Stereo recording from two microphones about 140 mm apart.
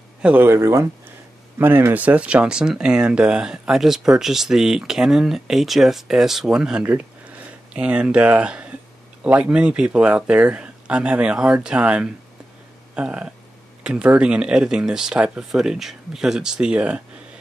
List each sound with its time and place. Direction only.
0.2 s speech: 10° right (ahead or behind)